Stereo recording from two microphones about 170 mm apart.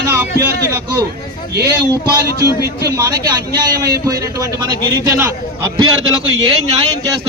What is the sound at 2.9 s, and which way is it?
A man's voice, 25° right (ahead or behind).